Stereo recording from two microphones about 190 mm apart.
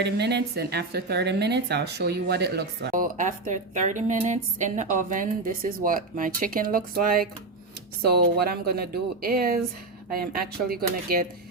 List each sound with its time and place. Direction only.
0.0 s a woman's voice: 60° right (ahead or behind)